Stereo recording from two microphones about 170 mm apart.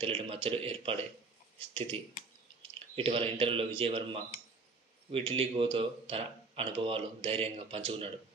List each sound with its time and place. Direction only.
0.0 s speech: 30° right (ahead or behind)
3.0 s speech: 35° right (ahead or behind)